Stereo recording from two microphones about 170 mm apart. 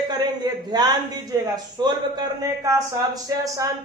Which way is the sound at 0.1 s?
25° right (ahead or behind).